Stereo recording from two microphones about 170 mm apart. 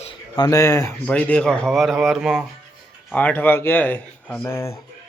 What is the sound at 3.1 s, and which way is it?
Speech, 10° left (ahead or behind).